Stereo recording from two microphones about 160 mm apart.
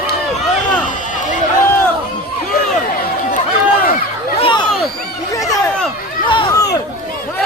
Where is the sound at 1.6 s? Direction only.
15° left (ahead or behind).